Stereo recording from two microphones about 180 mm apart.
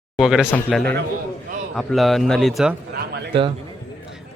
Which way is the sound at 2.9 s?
65° right (ahead or behind).